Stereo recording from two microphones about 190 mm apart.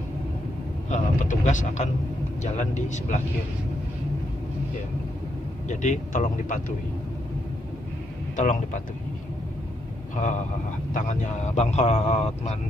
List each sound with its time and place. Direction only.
0.8 s speech: 40° left (ahead or behind)
5.7 s speech: 40° left (ahead or behind)
8.4 s speech: 40° left (ahead or behind)
10.9 s speech: 40° left (ahead or behind)